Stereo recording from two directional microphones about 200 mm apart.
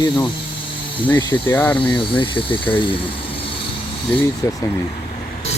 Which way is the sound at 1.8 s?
25° left (ahead or behind).